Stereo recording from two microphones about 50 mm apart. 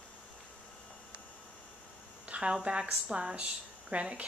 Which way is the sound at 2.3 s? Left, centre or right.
Right.